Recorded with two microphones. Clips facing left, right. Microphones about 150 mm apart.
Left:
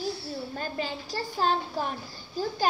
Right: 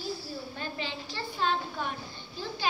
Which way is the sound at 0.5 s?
40° left (ahead or behind).